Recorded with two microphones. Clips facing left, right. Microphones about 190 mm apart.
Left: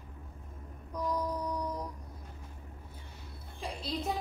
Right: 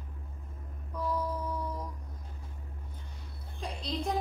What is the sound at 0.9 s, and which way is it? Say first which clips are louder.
Mantra: even; 15° left (ahead or behind).